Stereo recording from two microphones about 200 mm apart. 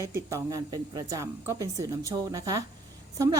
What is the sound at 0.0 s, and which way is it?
Speech, 15° right (ahead or behind).